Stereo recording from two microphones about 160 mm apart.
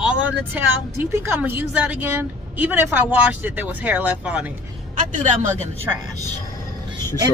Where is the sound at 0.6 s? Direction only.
15° right (ahead or behind).